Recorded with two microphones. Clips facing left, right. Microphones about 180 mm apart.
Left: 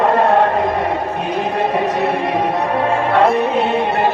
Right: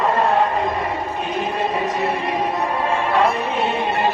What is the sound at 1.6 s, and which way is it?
Music, 60° left (ahead or behind).